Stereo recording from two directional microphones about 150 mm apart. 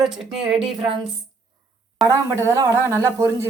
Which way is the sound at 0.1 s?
5° right (ahead or behind).